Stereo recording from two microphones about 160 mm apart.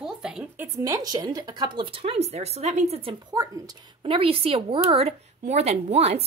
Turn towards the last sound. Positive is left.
turn(degrees=-40)  # may be behind; listen again after turning